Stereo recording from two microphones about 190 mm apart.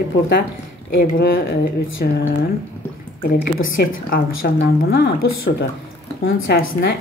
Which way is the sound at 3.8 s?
60° left (ahead or behind).